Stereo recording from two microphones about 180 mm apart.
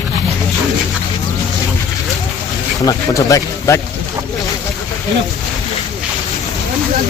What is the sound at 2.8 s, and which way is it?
Speech, 20° left (ahead or behind).